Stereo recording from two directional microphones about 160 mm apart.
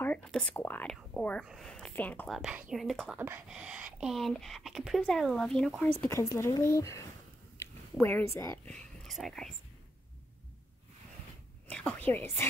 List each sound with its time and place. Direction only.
0.0 s speech: 5° left (ahead or behind)
6.0 s speech: 20° left (ahead or behind); by 9.5 s centre (ahead or behind)
11.6 s a woman's voice: 5° left (ahead or behind)